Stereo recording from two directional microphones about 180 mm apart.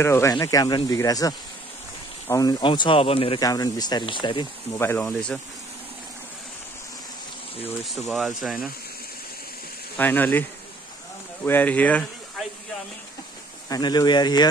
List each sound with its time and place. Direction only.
0.0 s speech: 15° left (ahead or behind)
4.7 s speech: 15° left (ahead or behind)
7.8 s speech: centre (ahead or behind)
9.9 s speech: 10° left (ahead or behind)
11.4 s speech: 10° left (ahead or behind)
13.7 s speech: 25° left (ahead or behind)